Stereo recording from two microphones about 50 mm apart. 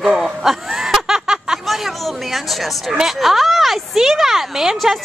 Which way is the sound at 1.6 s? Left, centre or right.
Centre.